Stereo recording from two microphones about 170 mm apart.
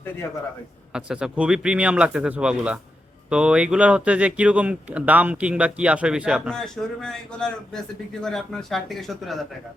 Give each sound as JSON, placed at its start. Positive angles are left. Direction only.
{"t": 0.9, "sound": "speech", "side_deg": -5}